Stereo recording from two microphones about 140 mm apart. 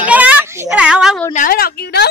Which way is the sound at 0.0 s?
10° right (ahead or behind).